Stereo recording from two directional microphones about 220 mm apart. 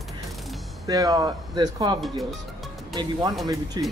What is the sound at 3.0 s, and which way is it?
Speech, 15° right (ahead or behind).